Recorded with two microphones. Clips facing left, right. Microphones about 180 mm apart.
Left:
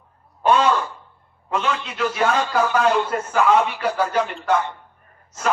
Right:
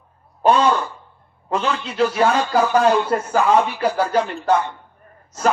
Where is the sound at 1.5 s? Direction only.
35° right (ahead or behind).